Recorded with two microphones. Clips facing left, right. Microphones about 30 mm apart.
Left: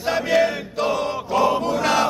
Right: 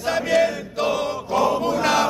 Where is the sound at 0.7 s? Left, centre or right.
Centre.